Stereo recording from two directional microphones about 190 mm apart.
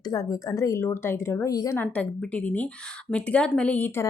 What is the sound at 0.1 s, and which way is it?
A woman's voice, 15° left (ahead or behind).